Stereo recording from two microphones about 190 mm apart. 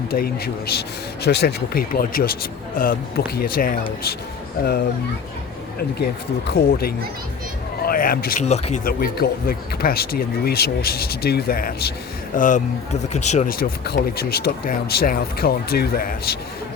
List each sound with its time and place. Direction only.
0.1 s speech: 55° left (ahead or behind)
6.5 s speech: 55° left (ahead or behind)
8.4 s speech: 35° left (ahead or behind)
8.8 s speech: 50° left (ahead or behind)
12.4 s speech: 40° left (ahead or behind)